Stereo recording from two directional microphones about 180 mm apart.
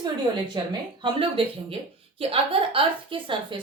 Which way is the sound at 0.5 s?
25° right (ahead or behind).